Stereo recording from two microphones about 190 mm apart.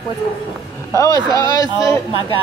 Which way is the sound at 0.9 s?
15° left (ahead or behind).